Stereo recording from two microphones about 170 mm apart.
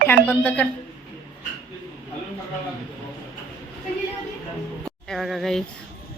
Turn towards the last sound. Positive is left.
turn(degrees=0)  # may be behind; listen again after turning